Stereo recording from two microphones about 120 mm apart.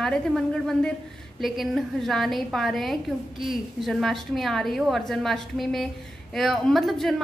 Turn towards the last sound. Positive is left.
turn(degrees=0)  # may be behind; listen again after turning